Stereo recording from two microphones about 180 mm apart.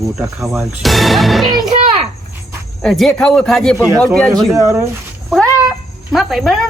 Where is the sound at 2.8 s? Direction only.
Centre (ahead or behind).